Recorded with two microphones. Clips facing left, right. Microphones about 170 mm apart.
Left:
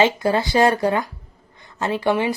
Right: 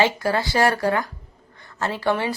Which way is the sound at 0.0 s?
20° left (ahead or behind).